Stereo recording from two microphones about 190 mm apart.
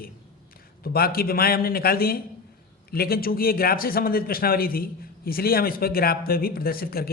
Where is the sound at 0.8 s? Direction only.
50° left (ahead or behind).